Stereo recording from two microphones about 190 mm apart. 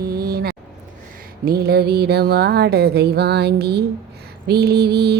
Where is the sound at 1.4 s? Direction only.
55° right (ahead or behind).